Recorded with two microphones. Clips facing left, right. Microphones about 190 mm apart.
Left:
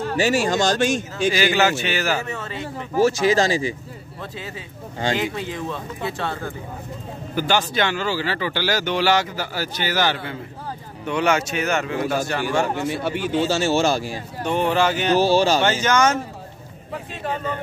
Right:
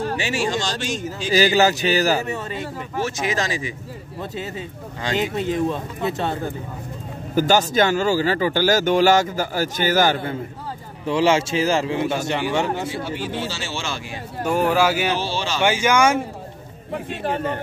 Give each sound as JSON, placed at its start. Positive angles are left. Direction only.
{"t": 0.2, "sound": "speech", "side_deg": 40}
{"t": 1.3, "sound": "speech", "side_deg": -35}
{"t": 2.2, "sound": "speech", "side_deg": -15}
{"t": 3.0, "sound": "speech", "side_deg": 35}
{"t": 5.0, "sound": "speech", "side_deg": 25}
{"t": 5.7, "sound": "a man's voice", "side_deg": -20}
{"t": 7.3, "sound": "speech", "side_deg": -40}
{"t": 11.1, "sound": "a man's voice", "side_deg": -25}
{"t": 12.8, "sound": "speech", "side_deg": 55}
{"t": 14.4, "sound": "speech", "side_deg": -5}
{"t": 15.1, "sound": "speech", "side_deg": 40}
{"t": 15.6, "sound": "speech", "side_deg": -10}